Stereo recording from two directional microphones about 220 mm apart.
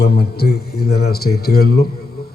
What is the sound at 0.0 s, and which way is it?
A man's voice, 45° left (ahead or behind).